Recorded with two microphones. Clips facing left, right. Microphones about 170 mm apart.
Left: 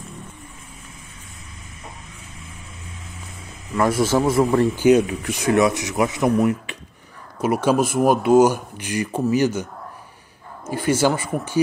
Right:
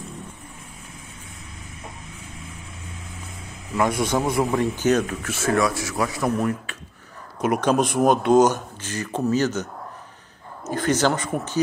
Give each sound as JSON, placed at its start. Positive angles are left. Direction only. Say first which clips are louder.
{"t": 3.7, "sound": "a man's voice", "louder": "left 3 dB", "side_deg": 5}
{"t": 4.7, "sound": "speech", "louder": "left 5 dB", "side_deg": 10}
{"t": 10.7, "sound": "speech", "louder": "left 2 dB", "side_deg": 10}